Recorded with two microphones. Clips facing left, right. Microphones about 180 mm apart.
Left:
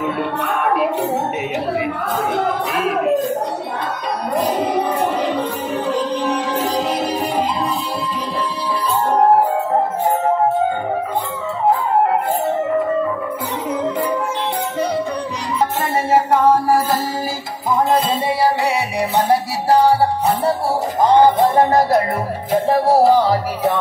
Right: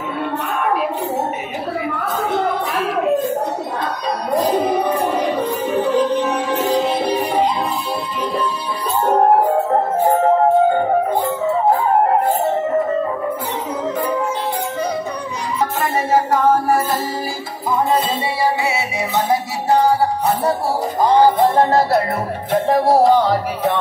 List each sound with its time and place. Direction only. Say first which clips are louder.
5.8 s music: right 4 dB; centre (ahead or behind)
6.1 s music: right 1 dB; 35° left (ahead or behind)
16.1 s music: left 2 dB; 30° left (ahead or behind)
18.6 s music: left 2 dB; 40° left (ahead or behind)
21.5 s music: left 1 dB; 15° left (ahead or behind)